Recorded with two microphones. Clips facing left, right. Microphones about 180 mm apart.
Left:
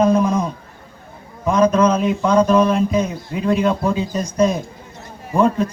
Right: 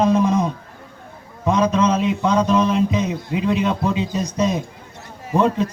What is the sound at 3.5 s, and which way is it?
Speech, 25° right (ahead or behind).